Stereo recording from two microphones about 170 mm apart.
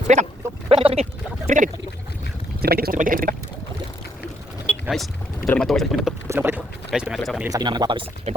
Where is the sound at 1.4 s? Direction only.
45° right (ahead or behind).